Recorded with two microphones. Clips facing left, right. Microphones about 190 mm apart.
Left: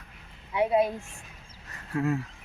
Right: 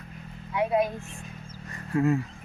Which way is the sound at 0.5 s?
25° left (ahead or behind).